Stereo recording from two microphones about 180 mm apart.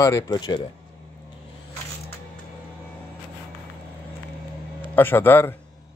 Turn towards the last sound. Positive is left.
turn(degrees=10)  # may be behind; listen again after turning